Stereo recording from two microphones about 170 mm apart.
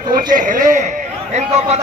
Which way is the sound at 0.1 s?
55° right (ahead or behind).